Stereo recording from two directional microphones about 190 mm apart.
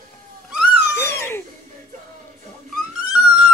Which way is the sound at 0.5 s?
5° right (ahead or behind).